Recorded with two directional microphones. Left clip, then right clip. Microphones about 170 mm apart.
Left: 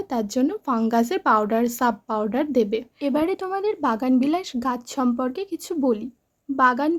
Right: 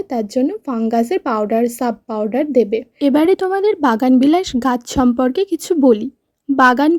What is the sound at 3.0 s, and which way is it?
A woman's voice, 45° right (ahead or behind).